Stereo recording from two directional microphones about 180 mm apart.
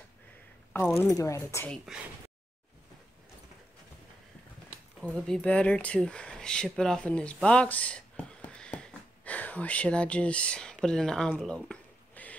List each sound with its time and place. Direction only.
1.0 s speech: 20° left (ahead or behind)
5.0 s speech: 5° left (ahead or behind)